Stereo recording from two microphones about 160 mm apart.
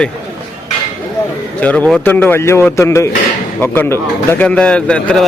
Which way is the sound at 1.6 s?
10° left (ahead or behind).